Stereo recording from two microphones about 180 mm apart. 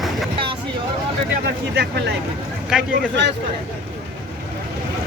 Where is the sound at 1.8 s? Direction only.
65° right (ahead or behind).